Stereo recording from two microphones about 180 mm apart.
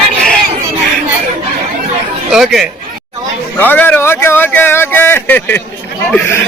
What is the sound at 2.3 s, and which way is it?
Speech, centre (ahead or behind).